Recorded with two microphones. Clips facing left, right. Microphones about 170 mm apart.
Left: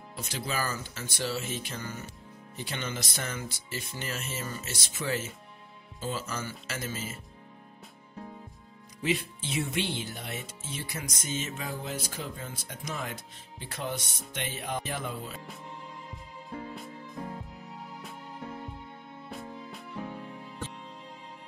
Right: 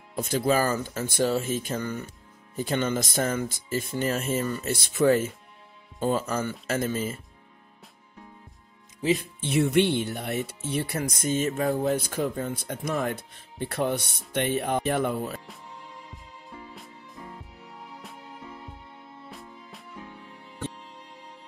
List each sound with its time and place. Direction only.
0.1 s speech: 50° right (ahead or behind)
9.0 s speech: 45° right (ahead or behind)
9.4 s speech: 60° right (ahead or behind)